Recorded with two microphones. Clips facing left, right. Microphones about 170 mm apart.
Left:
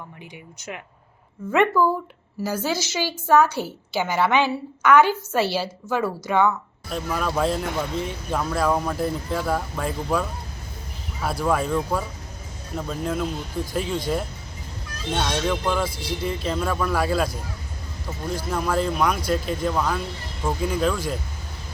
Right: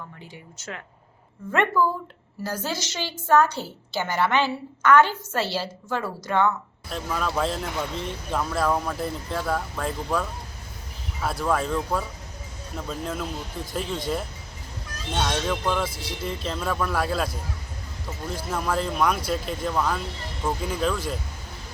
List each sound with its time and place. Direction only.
2.4 s a woman's voice: 10° left (ahead or behind)
18.3 s speech: centre (ahead or behind)